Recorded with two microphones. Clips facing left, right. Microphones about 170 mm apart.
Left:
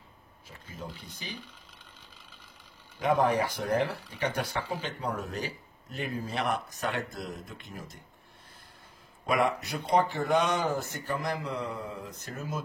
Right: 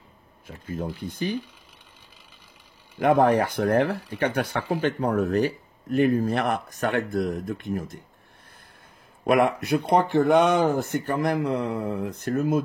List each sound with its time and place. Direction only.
0.5 s speech: 55° right (ahead or behind)
3.0 s speech: 60° right (ahead or behind)
9.2 s speech: 60° right (ahead or behind)